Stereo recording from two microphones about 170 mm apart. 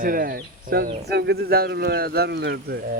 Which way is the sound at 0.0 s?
55° right (ahead or behind).